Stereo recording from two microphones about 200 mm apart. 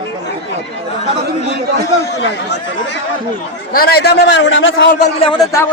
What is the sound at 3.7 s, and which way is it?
A man's voice, 50° left (ahead or behind).